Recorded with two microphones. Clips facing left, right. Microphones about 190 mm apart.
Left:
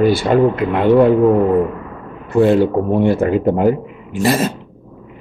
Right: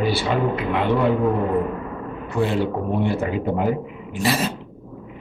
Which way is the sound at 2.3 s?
50° left (ahead or behind).